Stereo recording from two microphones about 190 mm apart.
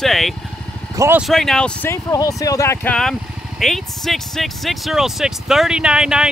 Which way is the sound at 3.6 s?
Centre (ahead or behind).